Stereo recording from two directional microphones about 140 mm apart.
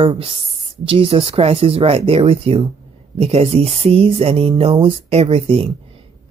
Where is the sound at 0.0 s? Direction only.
40° right (ahead or behind).